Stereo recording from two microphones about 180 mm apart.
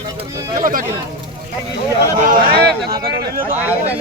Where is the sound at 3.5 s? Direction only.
10° right (ahead or behind).